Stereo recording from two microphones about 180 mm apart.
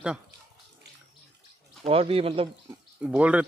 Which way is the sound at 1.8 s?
30° right (ahead or behind).